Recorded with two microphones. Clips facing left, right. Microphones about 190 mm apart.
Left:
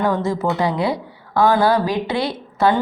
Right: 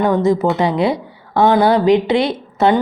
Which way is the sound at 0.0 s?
20° right (ahead or behind).